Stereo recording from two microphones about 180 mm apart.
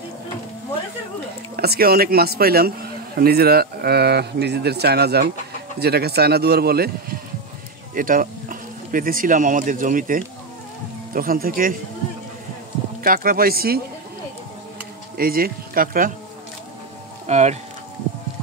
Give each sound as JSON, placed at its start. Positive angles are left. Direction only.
{"t": 1.6, "sound": "speech", "side_deg": -60}
{"t": 7.9, "sound": "speech", "side_deg": -50}
{"t": 13.0, "sound": "speech", "side_deg": -50}
{"t": 15.1, "sound": "speech", "side_deg": -55}
{"t": 17.3, "sound": "speech", "side_deg": -40}